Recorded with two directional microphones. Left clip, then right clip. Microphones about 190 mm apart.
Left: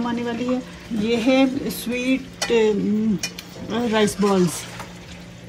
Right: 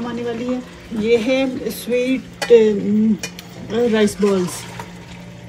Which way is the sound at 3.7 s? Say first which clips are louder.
Right 4 dB; 30° left (ahead or behind).